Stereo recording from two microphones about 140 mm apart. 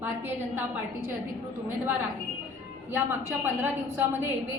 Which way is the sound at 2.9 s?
15° right (ahead or behind).